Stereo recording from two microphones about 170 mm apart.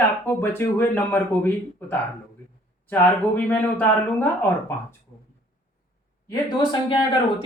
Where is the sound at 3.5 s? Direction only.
10° left (ahead or behind).